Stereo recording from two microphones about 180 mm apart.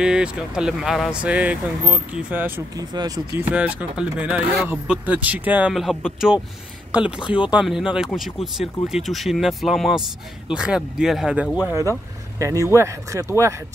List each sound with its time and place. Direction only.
0.0 s speech: 5° right (ahead or behind)
12.4 s speech: 15° right (ahead or behind)